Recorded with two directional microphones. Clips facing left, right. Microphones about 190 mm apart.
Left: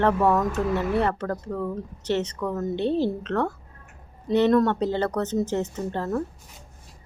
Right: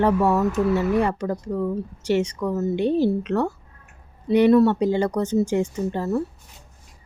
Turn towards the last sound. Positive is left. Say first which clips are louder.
# right 3 dB
turn(degrees=-10)  # may be behind; listen again after turning